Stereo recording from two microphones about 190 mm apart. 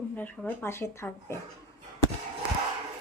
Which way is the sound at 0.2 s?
10° left (ahead or behind).